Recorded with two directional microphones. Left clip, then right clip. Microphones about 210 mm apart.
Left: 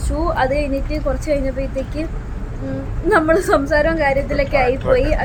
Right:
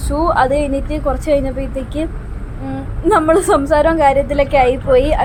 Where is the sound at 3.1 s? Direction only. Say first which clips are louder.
Right 3 dB; 15° right (ahead or behind).